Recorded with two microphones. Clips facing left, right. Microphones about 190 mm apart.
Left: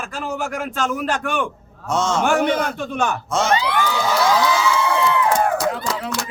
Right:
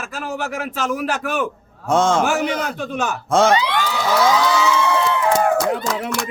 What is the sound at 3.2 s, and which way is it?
Speech, 55° right (ahead or behind).